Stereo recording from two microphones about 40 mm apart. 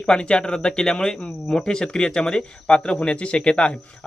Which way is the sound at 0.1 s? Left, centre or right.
Left.